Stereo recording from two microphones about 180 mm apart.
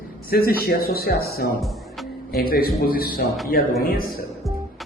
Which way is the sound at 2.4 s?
55° left (ahead or behind).